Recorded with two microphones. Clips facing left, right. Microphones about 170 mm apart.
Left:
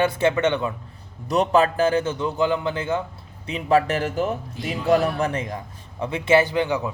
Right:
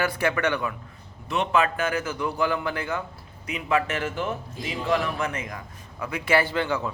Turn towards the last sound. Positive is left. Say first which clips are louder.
# left 4 dB
turn(degrees=15)  # may be behind; listen again after turning